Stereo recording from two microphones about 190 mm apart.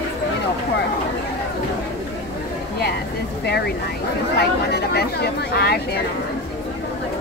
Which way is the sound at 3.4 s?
60° left (ahead or behind).